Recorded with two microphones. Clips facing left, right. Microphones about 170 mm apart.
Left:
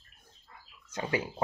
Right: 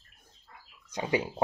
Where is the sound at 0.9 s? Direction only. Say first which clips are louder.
Right 3 dB; 15° right (ahead or behind).